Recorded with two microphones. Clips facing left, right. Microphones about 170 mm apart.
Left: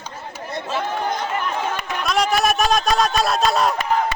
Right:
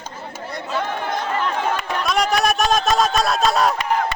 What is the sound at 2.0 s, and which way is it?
Speech, centre (ahead or behind).